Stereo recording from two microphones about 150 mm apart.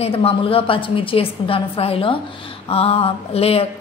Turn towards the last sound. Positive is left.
turn(degrees=40)  # may be behind; listen again after turning